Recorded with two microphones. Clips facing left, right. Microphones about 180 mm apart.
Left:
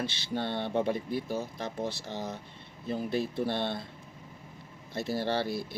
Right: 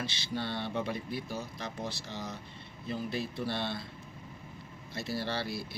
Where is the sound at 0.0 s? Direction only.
50° left (ahead or behind).